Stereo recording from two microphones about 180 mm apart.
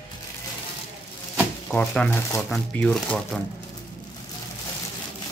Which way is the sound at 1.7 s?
5° left (ahead or behind).